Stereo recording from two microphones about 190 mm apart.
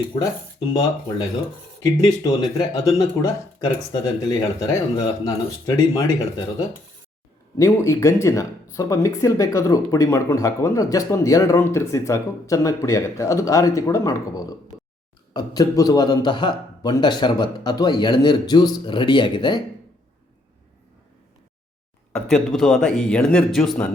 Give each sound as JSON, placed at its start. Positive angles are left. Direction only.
{"t": 1.8, "sound": "a man's voice", "side_deg": 20}
{"t": 7.6, "sound": "a man's voice", "side_deg": 15}
{"t": 22.1, "sound": "a man's voice", "side_deg": 0}